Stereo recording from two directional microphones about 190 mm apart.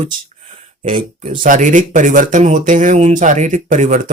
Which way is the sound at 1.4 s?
45° right (ahead or behind).